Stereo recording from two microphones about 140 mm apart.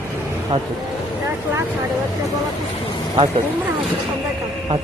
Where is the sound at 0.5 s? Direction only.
40° right (ahead or behind).